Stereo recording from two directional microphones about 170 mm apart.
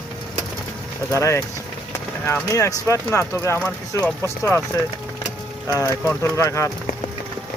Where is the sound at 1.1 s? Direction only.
15° left (ahead or behind).